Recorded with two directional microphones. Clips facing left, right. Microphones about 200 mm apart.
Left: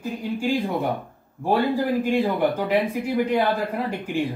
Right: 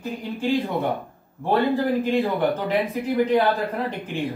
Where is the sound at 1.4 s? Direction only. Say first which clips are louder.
Right 1 dB; 10° left (ahead or behind).